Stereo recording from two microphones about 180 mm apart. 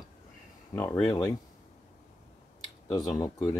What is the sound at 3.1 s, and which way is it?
Speech, 15° left (ahead or behind).